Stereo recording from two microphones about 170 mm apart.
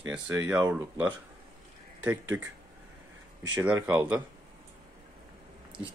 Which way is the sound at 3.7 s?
15° right (ahead or behind).